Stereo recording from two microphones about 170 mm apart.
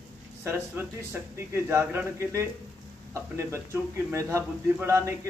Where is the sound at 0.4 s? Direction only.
15° right (ahead or behind).